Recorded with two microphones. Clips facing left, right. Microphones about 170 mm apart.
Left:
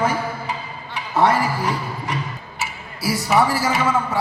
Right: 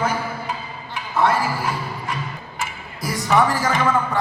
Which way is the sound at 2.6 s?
5° left (ahead or behind).